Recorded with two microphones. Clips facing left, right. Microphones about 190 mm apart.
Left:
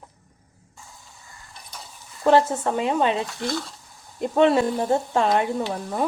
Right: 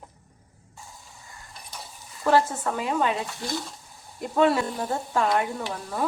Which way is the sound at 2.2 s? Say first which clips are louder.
Left 4 dB; 25° left (ahead or behind).